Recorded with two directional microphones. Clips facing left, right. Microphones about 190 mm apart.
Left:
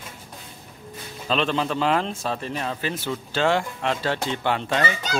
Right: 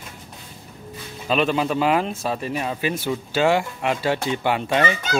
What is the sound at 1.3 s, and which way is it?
A man's voice, 10° right (ahead or behind).